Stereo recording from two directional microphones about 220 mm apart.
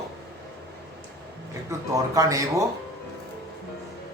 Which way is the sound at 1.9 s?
15° right (ahead or behind).